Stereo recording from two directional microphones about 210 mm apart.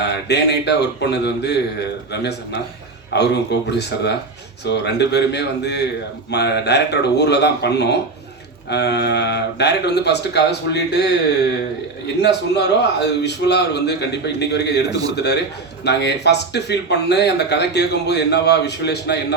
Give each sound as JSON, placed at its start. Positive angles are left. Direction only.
{"t": 0.0, "sound": "a man's voice", "side_deg": 55}
{"t": 12.2, "sound": "a man's voice", "side_deg": 55}